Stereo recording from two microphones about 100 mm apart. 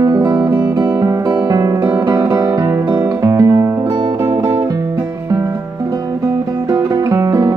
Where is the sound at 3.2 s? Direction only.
30° right (ahead or behind).